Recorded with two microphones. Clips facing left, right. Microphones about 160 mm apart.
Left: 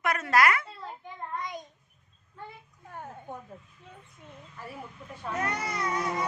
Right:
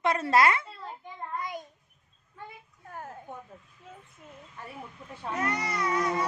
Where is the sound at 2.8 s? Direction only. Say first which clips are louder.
Right 1 dB; centre (ahead or behind).